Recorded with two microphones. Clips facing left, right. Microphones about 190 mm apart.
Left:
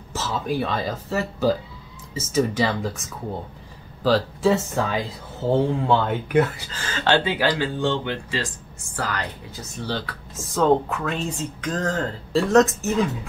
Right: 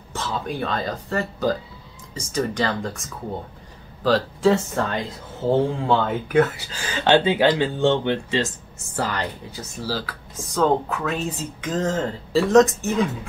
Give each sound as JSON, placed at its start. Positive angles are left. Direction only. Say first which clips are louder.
{"t": 0.1, "sound": "speech", "louder": "left 2 dB", "side_deg": 5}
{"t": 6.7, "sound": "speech", "louder": "right 3 dB", "side_deg": -15}
{"t": 9.8, "sound": "speech", "louder": "even", "side_deg": -5}